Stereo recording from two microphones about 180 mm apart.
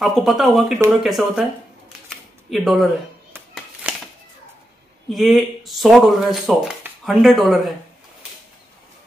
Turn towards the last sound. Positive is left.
turn(degrees=0)  # may be behind; listen again after turning